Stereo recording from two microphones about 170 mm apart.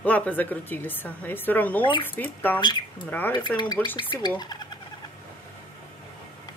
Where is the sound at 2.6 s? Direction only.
25° left (ahead or behind).